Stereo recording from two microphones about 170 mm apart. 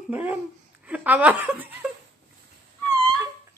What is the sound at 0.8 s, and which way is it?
A woman's voice, 10° right (ahead or behind).